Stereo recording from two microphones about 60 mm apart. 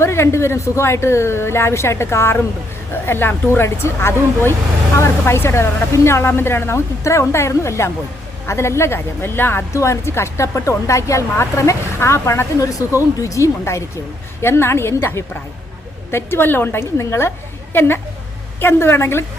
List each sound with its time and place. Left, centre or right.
0.0 s speech: left
9.7 s speech: left
13.2 s speech: left
14.4 s speech: left
16.8 s speech: left
17.7 s speech: left